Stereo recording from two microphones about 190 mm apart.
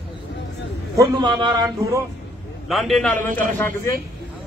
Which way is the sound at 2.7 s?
Centre (ahead or behind).